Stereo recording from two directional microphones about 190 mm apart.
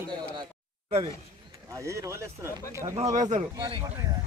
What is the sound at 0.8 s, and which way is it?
Speech, 30° right (ahead or behind).